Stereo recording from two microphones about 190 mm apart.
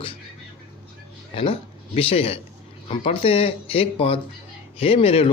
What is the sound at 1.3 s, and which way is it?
A man's voice, 30° left (ahead or behind).